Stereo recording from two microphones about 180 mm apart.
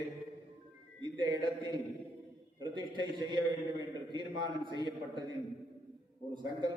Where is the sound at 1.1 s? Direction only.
25° right (ahead or behind).